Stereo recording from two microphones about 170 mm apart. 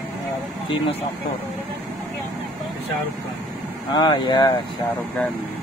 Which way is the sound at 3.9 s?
25° left (ahead or behind).